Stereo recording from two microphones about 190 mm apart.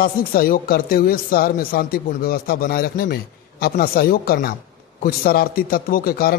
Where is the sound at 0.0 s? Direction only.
50° left (ahead or behind).